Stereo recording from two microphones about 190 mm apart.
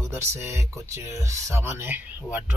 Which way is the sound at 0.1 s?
15° right (ahead or behind).